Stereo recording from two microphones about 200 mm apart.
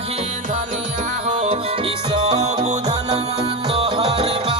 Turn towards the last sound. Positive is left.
turn(degrees=-25)  # may be behind; listen again after turning